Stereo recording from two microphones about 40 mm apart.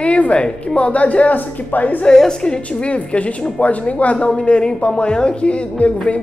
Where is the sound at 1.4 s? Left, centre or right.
Left.